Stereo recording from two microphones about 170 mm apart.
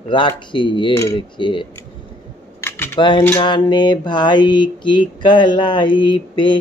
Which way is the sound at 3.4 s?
25° left (ahead or behind).